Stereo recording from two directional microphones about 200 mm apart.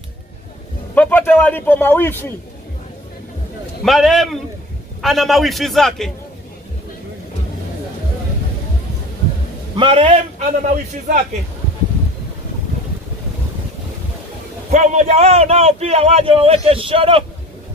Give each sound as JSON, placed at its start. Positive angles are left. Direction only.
{"t": 0.9, "sound": "a man's voice", "side_deg": 10}
{"t": 3.8, "sound": "a man's voice", "side_deg": 0}
{"t": 9.8, "sound": "a man's voice", "side_deg": -25}
{"t": 14.7, "sound": "a man's voice", "side_deg": -35}